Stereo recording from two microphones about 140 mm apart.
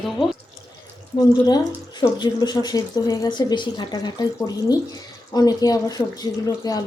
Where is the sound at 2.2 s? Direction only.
30° left (ahead or behind).